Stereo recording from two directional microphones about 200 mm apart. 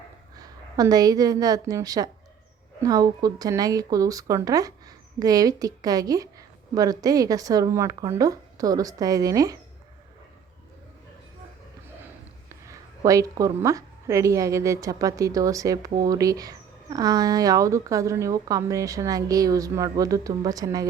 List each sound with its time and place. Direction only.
0.3 s a woman's voice: 20° right (ahead or behind)
12.5 s a woman's voice: 15° right (ahead or behind)